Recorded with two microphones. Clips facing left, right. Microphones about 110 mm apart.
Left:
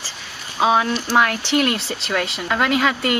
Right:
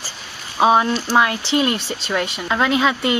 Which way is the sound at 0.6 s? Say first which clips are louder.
Right 2 dB; 15° right (ahead or behind).